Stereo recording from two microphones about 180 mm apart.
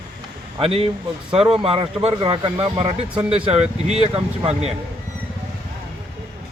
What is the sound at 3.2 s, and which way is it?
Speech, 5° right (ahead or behind).